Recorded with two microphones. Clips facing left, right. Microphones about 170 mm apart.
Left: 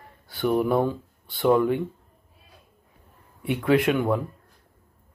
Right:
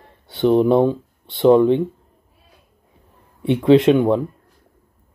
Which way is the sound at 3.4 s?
25° right (ahead or behind).